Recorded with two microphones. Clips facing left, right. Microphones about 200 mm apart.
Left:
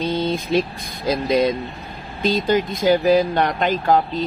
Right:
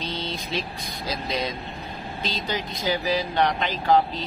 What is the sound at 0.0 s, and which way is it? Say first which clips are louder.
Speech: left 10 dB; 50° left (ahead or behind).